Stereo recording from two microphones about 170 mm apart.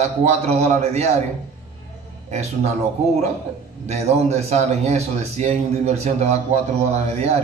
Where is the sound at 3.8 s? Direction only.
40° right (ahead or behind).